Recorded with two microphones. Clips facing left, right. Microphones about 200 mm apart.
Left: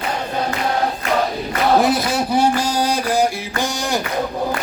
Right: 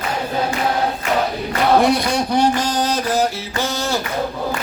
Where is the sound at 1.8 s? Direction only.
Centre (ahead or behind).